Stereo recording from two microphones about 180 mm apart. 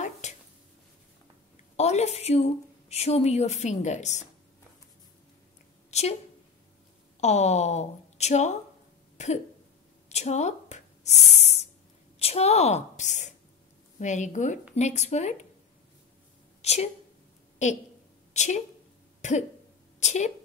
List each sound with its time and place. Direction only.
0.0 s a sound: 40° left (ahead or behind)
1.8 s a woman's voice: 35° left (ahead or behind)
5.9 s a sound: 35° left (ahead or behind)
7.2 s a woman's voice: 40° left (ahead or behind)
10.0 s spray: 40° left (ahead or behind)
12.2 s a woman's voice: 35° left (ahead or behind)
16.6 s speech: 35° left (ahead or behind)
18.3 s a woman's voice: 40° left (ahead or behind)
20.0 s a woman's voice: 40° left (ahead or behind)